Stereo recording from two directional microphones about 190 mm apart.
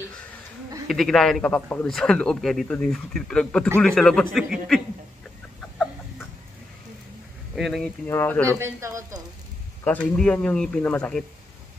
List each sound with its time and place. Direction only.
0.8 s a man's voice: centre (ahead or behind)
7.5 s a man's voice: centre (ahead or behind)
8.1 s speech: 10° left (ahead or behind)
8.5 s speech: 15° right (ahead or behind)
10.1 s a man's voice: 5° left (ahead or behind)